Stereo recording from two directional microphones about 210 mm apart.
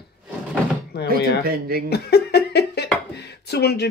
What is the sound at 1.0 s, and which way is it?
Speech, 45° right (ahead or behind).